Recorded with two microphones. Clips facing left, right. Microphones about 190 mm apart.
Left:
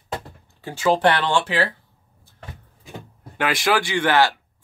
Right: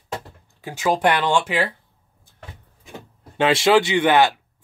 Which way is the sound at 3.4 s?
25° right (ahead or behind).